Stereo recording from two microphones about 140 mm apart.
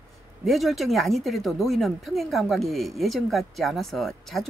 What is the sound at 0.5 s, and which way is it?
Speech, centre (ahead or behind).